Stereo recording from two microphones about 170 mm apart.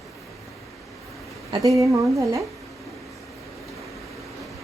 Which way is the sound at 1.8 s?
20° right (ahead or behind).